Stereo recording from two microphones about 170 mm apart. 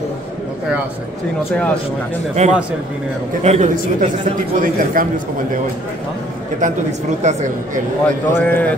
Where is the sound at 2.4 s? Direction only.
45° right (ahead or behind).